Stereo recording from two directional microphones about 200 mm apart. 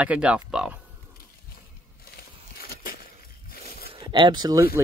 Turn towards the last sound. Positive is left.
turn(degrees=-20)  # may be behind; listen again after turning